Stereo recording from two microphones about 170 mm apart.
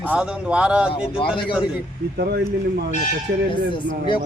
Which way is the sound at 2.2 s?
70° right (ahead or behind).